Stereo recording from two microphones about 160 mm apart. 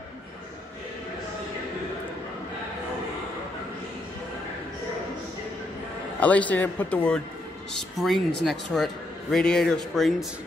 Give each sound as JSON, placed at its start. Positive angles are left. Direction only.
{"t": 6.1, "sound": "a man's voice", "side_deg": 10}